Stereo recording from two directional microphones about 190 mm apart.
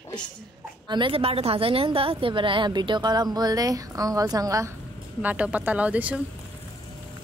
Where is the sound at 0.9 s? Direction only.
25° right (ahead or behind).